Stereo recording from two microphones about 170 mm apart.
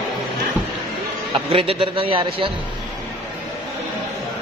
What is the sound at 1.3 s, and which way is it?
A man's voice, 35° right (ahead or behind).